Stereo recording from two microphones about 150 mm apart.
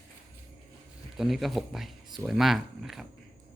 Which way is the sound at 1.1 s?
Centre (ahead or behind).